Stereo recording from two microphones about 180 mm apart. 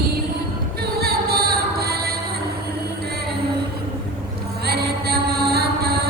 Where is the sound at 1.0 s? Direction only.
60° right (ahead or behind).